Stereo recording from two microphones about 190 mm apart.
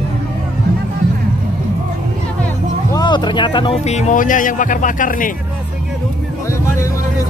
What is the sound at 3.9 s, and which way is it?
A man's voice, 40° left (ahead or behind).